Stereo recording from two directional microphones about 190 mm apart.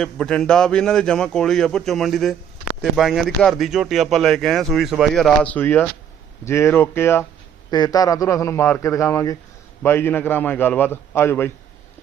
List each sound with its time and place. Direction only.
0.0 s a man's voice: 5° left (ahead or behind)